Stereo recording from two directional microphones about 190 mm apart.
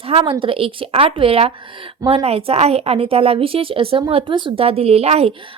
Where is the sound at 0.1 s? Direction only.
30° right (ahead or behind).